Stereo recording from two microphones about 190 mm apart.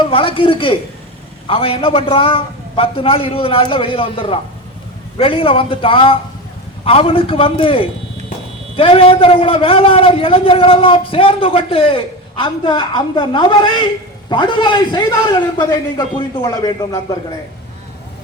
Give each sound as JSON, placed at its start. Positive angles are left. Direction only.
{"t": 0.0, "sound": "a man's voice", "side_deg": 30}